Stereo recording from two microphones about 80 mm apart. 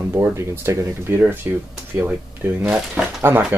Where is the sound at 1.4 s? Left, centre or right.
Right.